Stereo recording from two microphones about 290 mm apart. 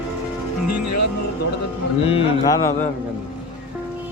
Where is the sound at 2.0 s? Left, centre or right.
Centre.